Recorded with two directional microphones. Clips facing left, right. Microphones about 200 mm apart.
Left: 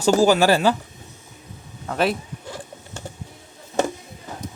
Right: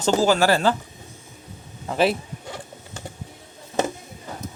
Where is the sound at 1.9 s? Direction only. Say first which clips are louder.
Right 1 dB; centre (ahead or behind).